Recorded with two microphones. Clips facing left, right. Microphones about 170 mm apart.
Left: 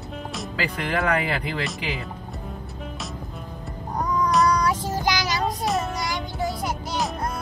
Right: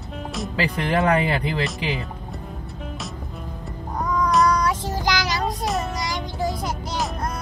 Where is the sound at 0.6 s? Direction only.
25° right (ahead or behind).